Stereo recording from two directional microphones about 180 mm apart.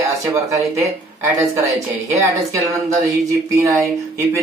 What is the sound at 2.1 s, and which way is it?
Speech, 20° right (ahead or behind).